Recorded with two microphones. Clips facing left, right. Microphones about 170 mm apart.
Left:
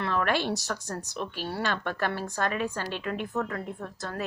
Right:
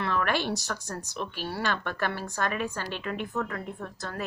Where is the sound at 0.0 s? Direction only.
45° left (ahead or behind).